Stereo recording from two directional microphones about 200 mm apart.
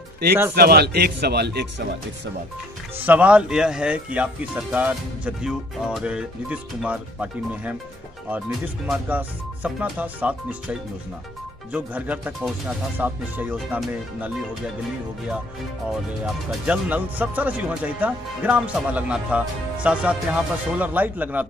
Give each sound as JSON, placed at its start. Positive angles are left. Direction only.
{"t": 0.6, "sound": "speech", "side_deg": -50}
{"t": 3.0, "sound": "speech", "side_deg": -10}
{"t": 16.4, "sound": "speech", "side_deg": -5}